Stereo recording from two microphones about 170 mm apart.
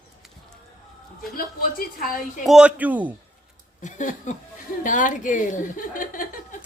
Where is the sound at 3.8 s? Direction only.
45° left (ahead or behind).